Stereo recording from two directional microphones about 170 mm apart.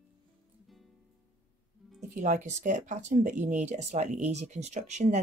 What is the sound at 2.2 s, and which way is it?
Speech, 45° right (ahead or behind).